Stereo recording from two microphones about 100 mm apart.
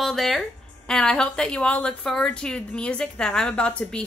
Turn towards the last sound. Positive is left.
turn(degrees=10)  # may be behind; listen again after turning